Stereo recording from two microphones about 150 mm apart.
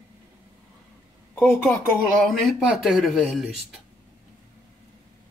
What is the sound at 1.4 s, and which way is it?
Speech, centre (ahead or behind).